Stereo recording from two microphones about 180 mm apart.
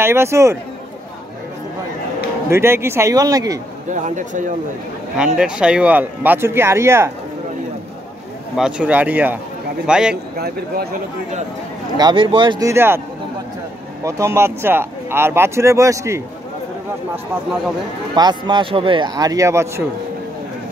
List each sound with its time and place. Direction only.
0.0 s speech: 15° right (ahead or behind)
2.5 s speech: 15° right (ahead or behind)
3.9 s speech: 45° right (ahead or behind)
5.1 s speech: 5° right (ahead or behind)
8.5 s a man's voice: 5° right (ahead or behind)
10.3 s speech: 60° right (ahead or behind)
12.0 s speech: 25° right (ahead or behind)
14.0 s speech: 15° right (ahead or behind)
18.1 s speech: 25° right (ahead or behind)